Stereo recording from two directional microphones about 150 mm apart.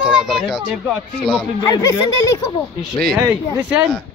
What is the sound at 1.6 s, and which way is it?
Speech, 20° left (ahead or behind).